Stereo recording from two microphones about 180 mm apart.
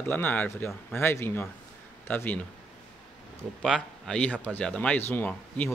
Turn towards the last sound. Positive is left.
turn(degrees=10)  # may be behind; listen again after turning